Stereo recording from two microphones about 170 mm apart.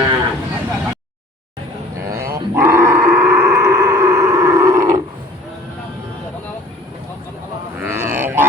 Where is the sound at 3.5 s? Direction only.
15° right (ahead or behind).